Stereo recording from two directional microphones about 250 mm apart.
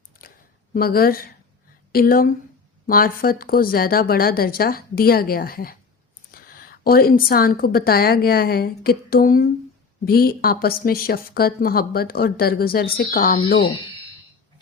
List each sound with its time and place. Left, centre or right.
0.7 s a woman's voice: left